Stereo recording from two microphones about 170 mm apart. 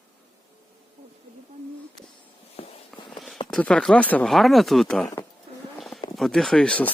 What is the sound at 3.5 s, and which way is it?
Speech, 5° left (ahead or behind).